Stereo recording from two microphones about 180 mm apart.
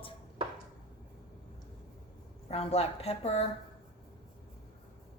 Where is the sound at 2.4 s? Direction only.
35° left (ahead or behind).